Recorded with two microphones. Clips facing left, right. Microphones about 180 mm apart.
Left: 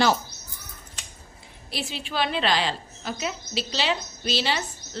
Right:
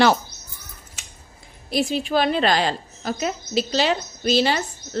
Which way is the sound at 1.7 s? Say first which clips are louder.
Right 9 dB; 45° right (ahead or behind).